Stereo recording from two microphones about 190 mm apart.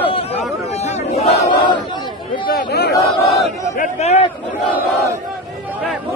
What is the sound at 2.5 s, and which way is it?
Chatter, 55° left (ahead or behind).